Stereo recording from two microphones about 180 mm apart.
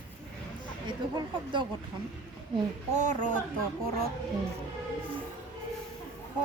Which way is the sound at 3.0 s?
40° right (ahead or behind).